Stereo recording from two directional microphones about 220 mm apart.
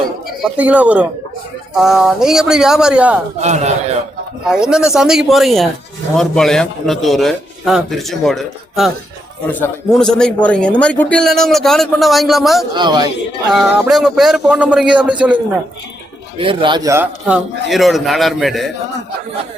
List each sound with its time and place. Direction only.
0.5 s a man's voice: 5° right (ahead or behind)
3.4 s a man's voice: 30° right (ahead or behind)
4.5 s a man's voice: 5° right (ahead or behind)
12.7 s a man's voice: 20° right (ahead or behind)
13.5 s a man's voice: centre (ahead or behind)
16.4 s a man's voice: 25° right (ahead or behind); by 18.7 s centre (ahead or behind)